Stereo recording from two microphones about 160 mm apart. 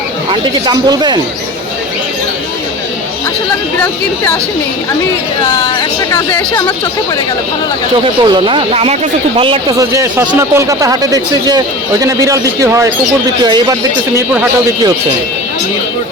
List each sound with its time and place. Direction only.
0.3 s speech: 25° right (ahead or behind)
5.6 s speech: 20° left (ahead or behind)
8.0 s speech: 30° right (ahead or behind)
9.7 s speech: 20° right (ahead or behind)